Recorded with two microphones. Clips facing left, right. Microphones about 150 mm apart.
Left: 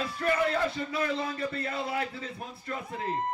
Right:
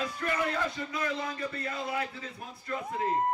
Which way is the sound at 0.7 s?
30° left (ahead or behind).